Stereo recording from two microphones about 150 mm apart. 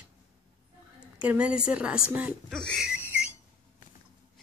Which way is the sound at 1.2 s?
10° right (ahead or behind).